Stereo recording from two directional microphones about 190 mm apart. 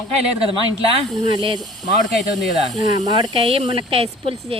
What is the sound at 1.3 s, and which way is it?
Speech, 25° right (ahead or behind).